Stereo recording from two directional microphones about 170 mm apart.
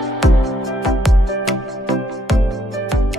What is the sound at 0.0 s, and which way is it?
Music, centre (ahead or behind).